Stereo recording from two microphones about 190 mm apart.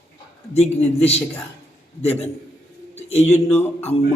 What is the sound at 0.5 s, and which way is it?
Speech, 35° left (ahead or behind).